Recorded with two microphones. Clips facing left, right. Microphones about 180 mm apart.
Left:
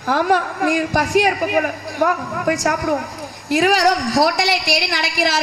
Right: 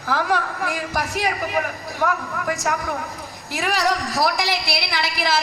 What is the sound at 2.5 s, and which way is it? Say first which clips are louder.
Speech: left 5 dB; 90° left.